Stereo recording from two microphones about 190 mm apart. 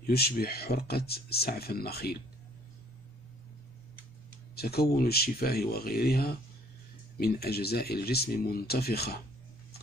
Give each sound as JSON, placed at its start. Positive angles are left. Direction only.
{"t": 0.0, "sound": "speech", "side_deg": 55}
{"t": 4.6, "sound": "speech", "side_deg": 55}